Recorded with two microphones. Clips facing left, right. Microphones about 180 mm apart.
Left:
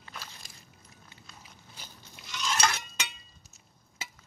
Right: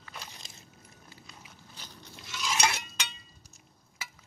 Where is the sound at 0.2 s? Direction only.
25° right (ahead or behind).